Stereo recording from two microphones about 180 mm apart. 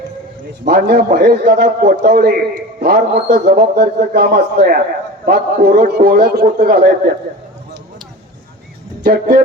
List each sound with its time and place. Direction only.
0.6 s a man's voice: 55° right (ahead or behind)
9.0 s a man's voice: 50° right (ahead or behind)